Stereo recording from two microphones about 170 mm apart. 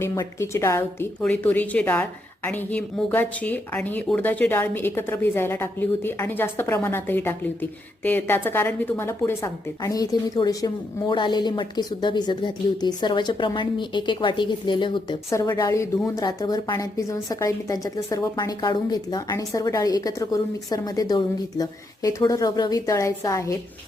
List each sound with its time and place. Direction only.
0.0 s a woman's voice: 15° left (ahead or behind)